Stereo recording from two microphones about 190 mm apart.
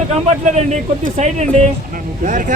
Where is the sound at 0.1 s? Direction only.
35° right (ahead or behind).